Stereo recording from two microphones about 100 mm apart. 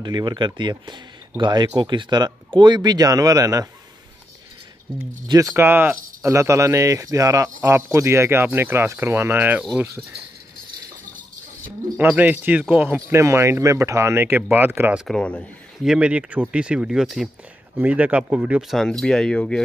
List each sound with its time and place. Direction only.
0.0 s speech: 45° right (ahead or behind)
5.3 s speech: 30° right (ahead or behind)
12.0 s speech: 15° right (ahead or behind)
13.2 s speech: 30° right (ahead or behind)
15.0 s speech: 10° left (ahead or behind)
15.8 s speech: 10° right (ahead or behind)
17.7 s speech: 15° right (ahead or behind)
18.7 s speech: 5° left (ahead or behind)